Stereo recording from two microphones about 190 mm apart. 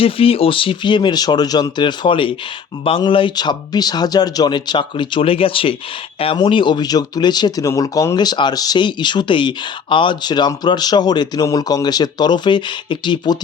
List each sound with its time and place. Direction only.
0.0 s speech: 30° left (ahead or behind)